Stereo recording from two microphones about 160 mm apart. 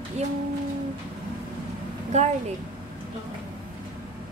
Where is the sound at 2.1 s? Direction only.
45° right (ahead or behind).